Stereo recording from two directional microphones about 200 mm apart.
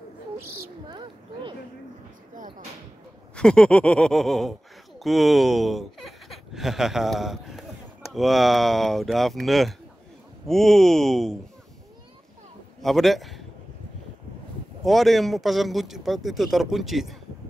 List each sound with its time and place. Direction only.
0.8 s a sound: 20° right (ahead or behind)
3.3 s a man's voice: 5° left (ahead or behind)
12.8 s a man's voice: centre (ahead or behind)
14.9 s a man's voice: centre (ahead or behind)